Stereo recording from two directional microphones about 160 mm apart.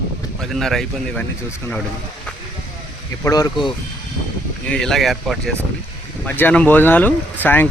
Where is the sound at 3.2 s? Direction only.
25° left (ahead or behind).